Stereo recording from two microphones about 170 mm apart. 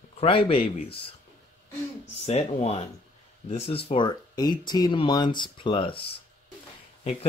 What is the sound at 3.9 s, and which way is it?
Speech, 25° left (ahead or behind).